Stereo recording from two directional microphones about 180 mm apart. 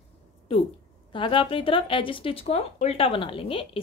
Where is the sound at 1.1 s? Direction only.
30° left (ahead or behind).